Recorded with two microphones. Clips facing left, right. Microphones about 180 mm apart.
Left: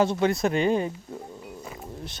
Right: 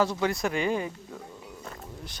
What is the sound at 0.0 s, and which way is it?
Speech, 25° left (ahead or behind).